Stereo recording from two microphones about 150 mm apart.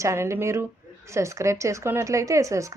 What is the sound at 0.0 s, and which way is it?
A woman's voice, 20° right (ahead or behind).